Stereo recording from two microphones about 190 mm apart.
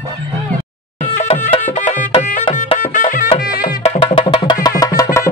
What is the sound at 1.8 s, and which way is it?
Music, 40° left (ahead or behind).